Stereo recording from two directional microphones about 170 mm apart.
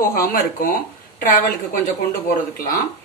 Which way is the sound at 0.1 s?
60° left (ahead or behind).